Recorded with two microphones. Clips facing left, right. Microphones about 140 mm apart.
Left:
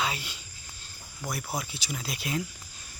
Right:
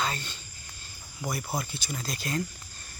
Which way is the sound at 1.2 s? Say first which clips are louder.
Right 2 dB; centre (ahead or behind).